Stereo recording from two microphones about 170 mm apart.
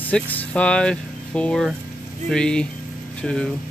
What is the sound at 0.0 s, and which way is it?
Speech, 10° left (ahead or behind).